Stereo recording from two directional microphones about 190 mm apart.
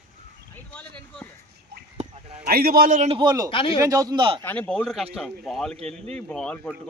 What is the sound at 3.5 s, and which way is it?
Speech, 25° left (ahead or behind).